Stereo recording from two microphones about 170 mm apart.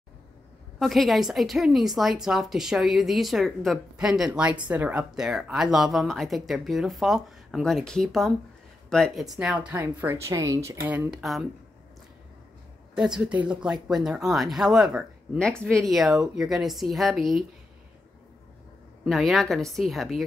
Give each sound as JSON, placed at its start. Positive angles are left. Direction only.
{"t": 0.7, "sound": "a woman's voice", "side_deg": 0}
{"t": 10.9, "sound": "a woman's voice", "side_deg": -5}
{"t": 12.9, "sound": "a woman's voice", "side_deg": -5}
{"t": 19.0, "sound": "a woman's voice", "side_deg": 0}